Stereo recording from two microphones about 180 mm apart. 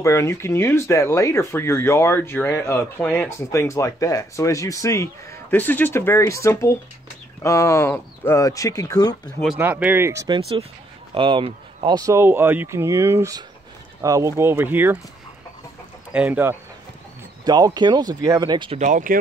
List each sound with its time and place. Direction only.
0.0 s speech: 15° left (ahead or behind)
9.2 s speech: 5° left (ahead or behind)
9.6 s speech: 10° right (ahead or behind)
16.1 s speech: 10° right (ahead or behind)
17.5 s speech: 20° right (ahead or behind)
18.8 s speech: 50° right (ahead or behind)